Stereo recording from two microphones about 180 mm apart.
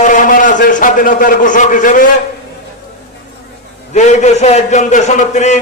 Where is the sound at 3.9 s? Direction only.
40° left (ahead or behind).